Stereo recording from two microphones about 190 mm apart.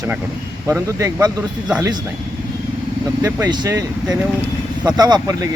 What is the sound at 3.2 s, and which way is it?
Speech, 15° right (ahead or behind).